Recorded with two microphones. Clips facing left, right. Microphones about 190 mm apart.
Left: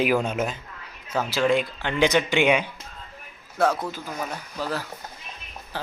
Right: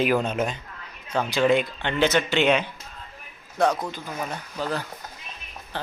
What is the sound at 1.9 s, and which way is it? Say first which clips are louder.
Speech: left 1 dB; 15° left (ahead or behind).